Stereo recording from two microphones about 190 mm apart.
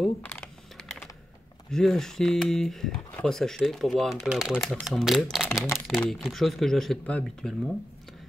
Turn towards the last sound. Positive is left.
turn(degrees=0)  # may be behind; listen again after turning